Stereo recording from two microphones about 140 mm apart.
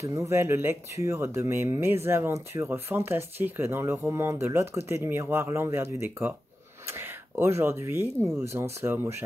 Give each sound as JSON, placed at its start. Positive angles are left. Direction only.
{"t": 0.0, "sound": "speech", "side_deg": -20}